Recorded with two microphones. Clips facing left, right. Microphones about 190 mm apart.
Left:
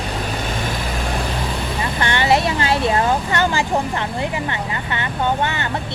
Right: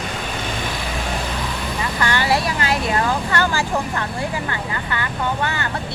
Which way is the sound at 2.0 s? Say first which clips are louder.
Left 3 dB; 20° left (ahead or behind).